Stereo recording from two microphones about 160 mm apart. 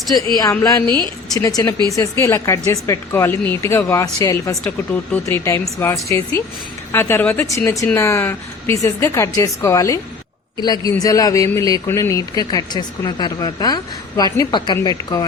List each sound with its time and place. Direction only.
0.6 s a man's voice: 20° left (ahead or behind)